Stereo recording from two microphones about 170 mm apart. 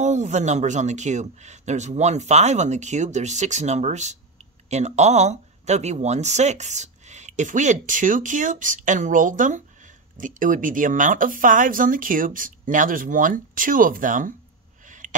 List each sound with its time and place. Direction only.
0.0 s speech: 45° right (ahead or behind)
14.9 s gasp: 50° right (ahead or behind)